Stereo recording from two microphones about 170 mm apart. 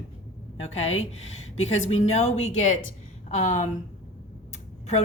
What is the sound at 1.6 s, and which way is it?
A woman's voice, 40° left (ahead or behind).